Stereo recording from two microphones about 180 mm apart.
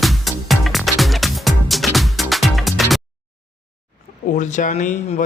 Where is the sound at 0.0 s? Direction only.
Centre (ahead or behind).